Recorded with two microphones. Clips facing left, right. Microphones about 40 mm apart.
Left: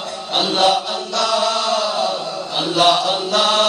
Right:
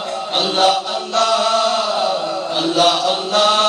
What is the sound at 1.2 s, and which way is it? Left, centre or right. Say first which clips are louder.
Chant: right 3 dB; right.